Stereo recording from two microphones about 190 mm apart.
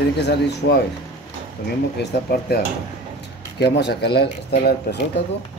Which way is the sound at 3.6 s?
60° left (ahead or behind).